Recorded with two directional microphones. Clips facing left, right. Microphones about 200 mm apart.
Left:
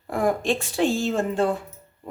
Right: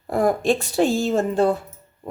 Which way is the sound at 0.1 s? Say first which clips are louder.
Right 4 dB; 40° right (ahead or behind).